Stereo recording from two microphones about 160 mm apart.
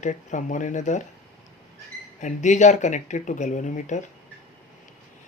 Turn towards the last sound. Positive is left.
turn(degrees=50)  # may be behind; listen again after turning